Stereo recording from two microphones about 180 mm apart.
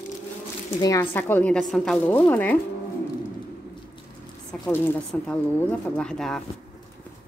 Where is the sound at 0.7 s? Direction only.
20° left (ahead or behind).